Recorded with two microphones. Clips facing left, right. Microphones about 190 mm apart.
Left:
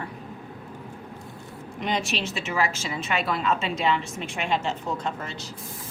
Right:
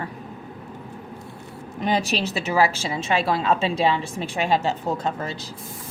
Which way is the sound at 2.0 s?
35° right (ahead or behind).